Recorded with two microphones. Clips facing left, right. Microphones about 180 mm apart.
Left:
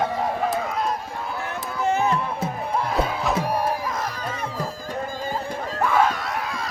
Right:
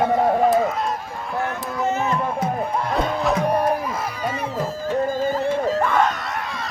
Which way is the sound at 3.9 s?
5° right (ahead or behind).